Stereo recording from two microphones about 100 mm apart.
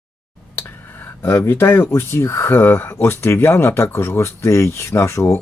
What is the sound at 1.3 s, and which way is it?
Speech, 25° left (ahead or behind).